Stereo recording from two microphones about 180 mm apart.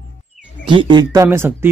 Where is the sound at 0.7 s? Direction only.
25° right (ahead or behind).